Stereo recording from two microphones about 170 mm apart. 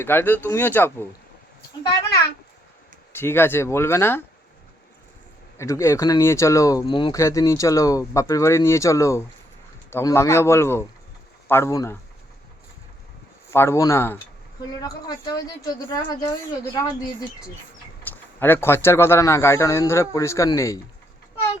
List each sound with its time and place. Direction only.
0.0 s a man's voice: 10° left (ahead or behind)
3.1 s a man's voice: 15° left (ahead or behind)
5.5 s speech: 15° left (ahead or behind)
7.2 s a man's voice: 15° left (ahead or behind)
13.5 s a man's voice: 15° left (ahead or behind)
18.3 s a man's voice: 15° left (ahead or behind)